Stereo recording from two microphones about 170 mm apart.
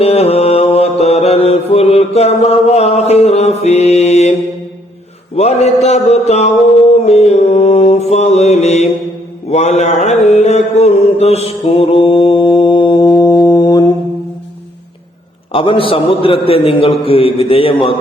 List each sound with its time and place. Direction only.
0.0 s mantra: 35° left (ahead or behind)
5.4 s a man's voice: 40° left (ahead or behind)
7.0 s mantra: 40° left (ahead or behind); by 13.8 s 20° left (ahead or behind)
15.5 s a man's voice: 30° left (ahead or behind)